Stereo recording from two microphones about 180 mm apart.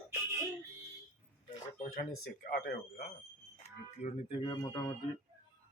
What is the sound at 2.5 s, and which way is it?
Speech, 60° left (ahead or behind).